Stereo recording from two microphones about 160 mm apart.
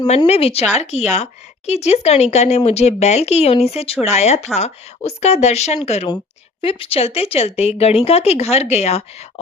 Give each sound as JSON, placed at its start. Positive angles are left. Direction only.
{"t": 0.3, "sound": "speech", "side_deg": 40}